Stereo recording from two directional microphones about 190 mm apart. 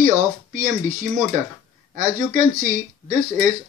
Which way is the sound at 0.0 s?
45° right (ahead or behind).